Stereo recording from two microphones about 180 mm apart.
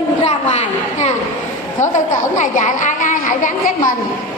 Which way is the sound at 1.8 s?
45° left (ahead or behind).